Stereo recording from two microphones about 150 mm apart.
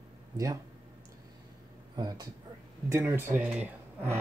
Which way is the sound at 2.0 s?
25° right (ahead or behind).